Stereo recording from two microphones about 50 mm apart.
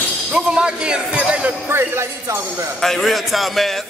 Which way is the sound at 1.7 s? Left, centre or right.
Right.